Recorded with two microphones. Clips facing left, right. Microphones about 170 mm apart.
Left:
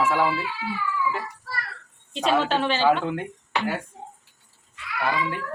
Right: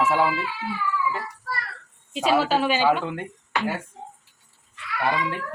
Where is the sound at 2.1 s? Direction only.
5° right (ahead or behind).